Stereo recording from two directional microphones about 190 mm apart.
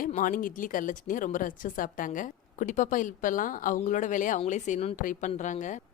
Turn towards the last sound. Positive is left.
turn(degrees=40)  # may be behind; listen again after turning